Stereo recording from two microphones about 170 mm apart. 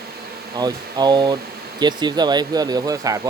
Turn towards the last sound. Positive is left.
turn(degrees=-20)  # may be behind; listen again after turning